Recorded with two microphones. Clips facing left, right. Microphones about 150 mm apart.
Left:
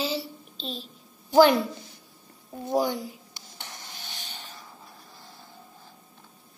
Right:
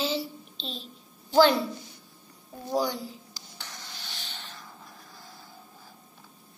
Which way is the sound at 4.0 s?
45° left (ahead or behind).